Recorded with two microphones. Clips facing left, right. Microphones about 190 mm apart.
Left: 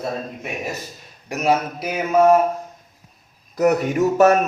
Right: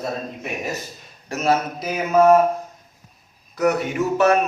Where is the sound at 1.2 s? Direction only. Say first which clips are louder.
Left 1 dB; 15° left (ahead or behind).